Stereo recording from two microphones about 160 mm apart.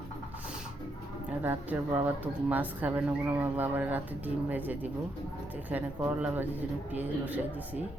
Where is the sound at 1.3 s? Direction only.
10° right (ahead or behind).